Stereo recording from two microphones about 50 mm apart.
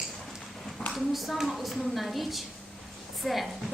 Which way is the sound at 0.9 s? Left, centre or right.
Centre.